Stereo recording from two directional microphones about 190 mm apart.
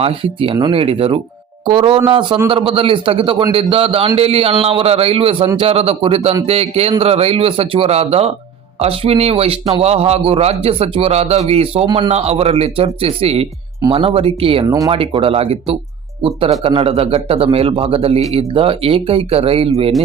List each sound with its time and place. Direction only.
0.0 s a man's voice: 30° right (ahead or behind)